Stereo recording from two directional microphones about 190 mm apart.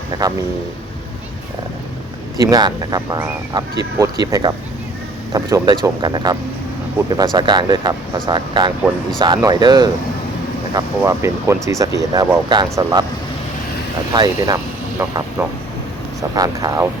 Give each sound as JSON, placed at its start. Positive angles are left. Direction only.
{"t": 0.1, "sound": "speech", "side_deg": -20}
{"t": 2.5, "sound": "speech", "side_deg": -20}
{"t": 7.0, "sound": "speech", "side_deg": -10}
{"t": 7.3, "sound": "speech", "side_deg": -20}
{"t": 14.1, "sound": "speech", "side_deg": -20}